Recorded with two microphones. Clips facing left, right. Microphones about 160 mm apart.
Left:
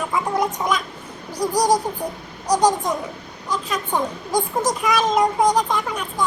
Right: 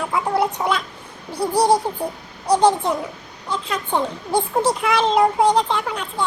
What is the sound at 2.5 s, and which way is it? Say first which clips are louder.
Speech: right 2 dB; 10° left (ahead or behind).